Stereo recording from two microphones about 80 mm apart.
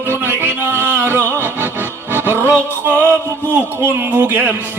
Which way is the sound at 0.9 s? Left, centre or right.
Right.